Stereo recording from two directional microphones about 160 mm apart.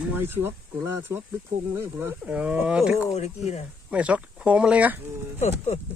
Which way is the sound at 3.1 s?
40° left (ahead or behind).